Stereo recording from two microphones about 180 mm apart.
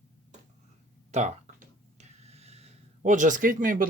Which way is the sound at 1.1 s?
40° right (ahead or behind).